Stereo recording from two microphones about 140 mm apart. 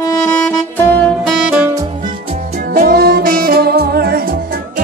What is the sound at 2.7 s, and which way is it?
Music, 90° right.